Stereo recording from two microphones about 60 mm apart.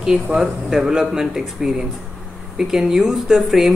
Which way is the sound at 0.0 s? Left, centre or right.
Centre.